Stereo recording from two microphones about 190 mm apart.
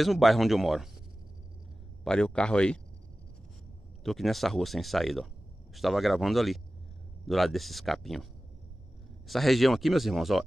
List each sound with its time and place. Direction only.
0.0 s speech: centre (ahead or behind)
2.0 s speech: 5° left (ahead or behind)
4.0 s speech: centre (ahead or behind)
9.3 s speech: centre (ahead or behind)